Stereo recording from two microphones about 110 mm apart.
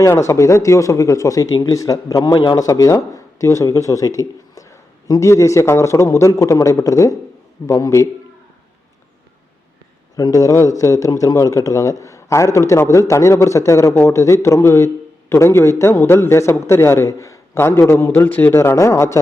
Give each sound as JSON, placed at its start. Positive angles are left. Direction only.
{"t": 0.0, "sound": "speech", "side_deg": 25}
{"t": 10.2, "sound": "speech", "side_deg": 30}